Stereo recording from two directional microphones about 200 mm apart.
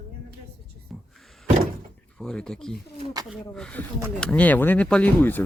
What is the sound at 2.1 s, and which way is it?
Speech, 5° left (ahead or behind).